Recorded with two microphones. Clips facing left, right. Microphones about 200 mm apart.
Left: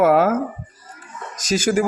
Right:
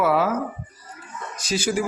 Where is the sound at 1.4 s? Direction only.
45° left (ahead or behind).